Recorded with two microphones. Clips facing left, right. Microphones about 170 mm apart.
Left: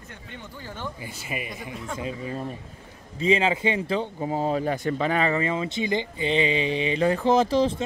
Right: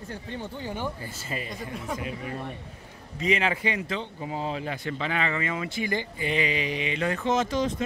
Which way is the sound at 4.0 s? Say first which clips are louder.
Left 6 dB; 40° left (ahead or behind).